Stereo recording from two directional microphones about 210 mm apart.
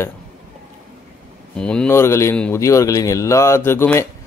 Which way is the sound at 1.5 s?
5° left (ahead or behind).